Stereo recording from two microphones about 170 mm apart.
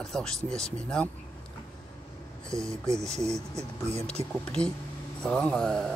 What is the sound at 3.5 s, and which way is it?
Speech, 40° right (ahead or behind).